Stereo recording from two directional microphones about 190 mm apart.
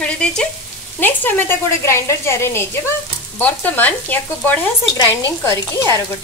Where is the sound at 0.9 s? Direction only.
10° left (ahead or behind).